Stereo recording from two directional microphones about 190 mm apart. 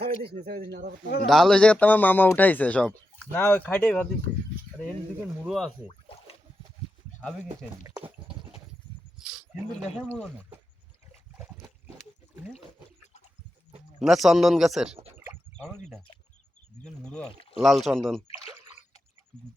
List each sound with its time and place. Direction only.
0.0 s a sound: 55° right (ahead or behind)
0.3 s speech: 55° right (ahead or behind)
1.3 s speech: 5° left (ahead or behind)
5.5 s speech: 5° left (ahead or behind)
7.4 s speech: 10° right (ahead or behind)
9.1 s a sound: centre (ahead or behind)
14.0 s speech: centre (ahead or behind)
16.8 s speech: 5° left (ahead or behind)